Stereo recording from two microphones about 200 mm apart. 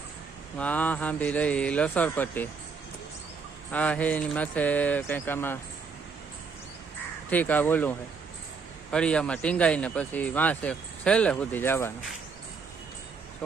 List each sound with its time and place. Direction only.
0.6 s speech: 5° left (ahead or behind)
3.7 s speech: 5° left (ahead or behind)
7.3 s a man's voice: 10° left (ahead or behind)